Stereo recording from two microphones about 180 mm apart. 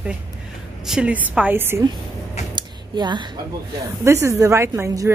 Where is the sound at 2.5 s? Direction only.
25° right (ahead or behind).